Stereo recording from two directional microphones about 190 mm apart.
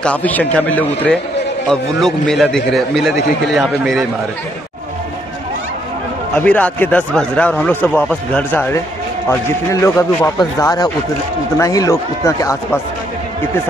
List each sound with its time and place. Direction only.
0.0 s a man's voice: 10° left (ahead or behind)
6.3 s a man's voice: 5° left (ahead or behind)